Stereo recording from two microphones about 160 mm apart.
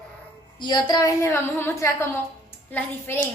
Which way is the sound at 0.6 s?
25° left (ahead or behind).